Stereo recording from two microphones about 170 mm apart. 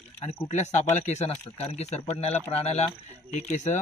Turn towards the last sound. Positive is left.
turn(degrees=45)  # may be behind; listen again after turning